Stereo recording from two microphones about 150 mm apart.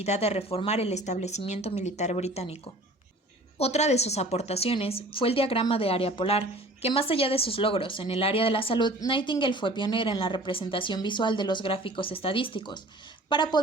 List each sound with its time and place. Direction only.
0.0 s speech: 45° left (ahead or behind)
3.6 s a woman's voice: 45° left (ahead or behind); by 13.6 s 30° left (ahead or behind)